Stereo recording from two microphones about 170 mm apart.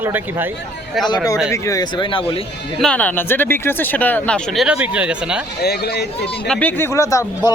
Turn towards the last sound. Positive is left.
turn(degrees=20)  # may be behind; listen again after turning